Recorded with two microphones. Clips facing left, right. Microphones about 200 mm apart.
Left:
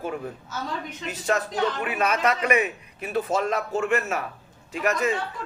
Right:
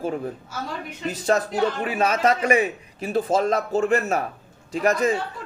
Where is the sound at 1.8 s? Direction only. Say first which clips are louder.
Right 3 dB; 30° right (ahead or behind).